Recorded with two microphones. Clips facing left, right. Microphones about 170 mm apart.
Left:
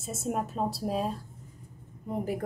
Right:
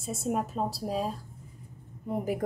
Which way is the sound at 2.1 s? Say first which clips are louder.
Right 2 dB; 10° right (ahead or behind).